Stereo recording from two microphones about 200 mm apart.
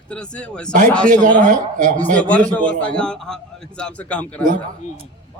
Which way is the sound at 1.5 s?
40° right (ahead or behind).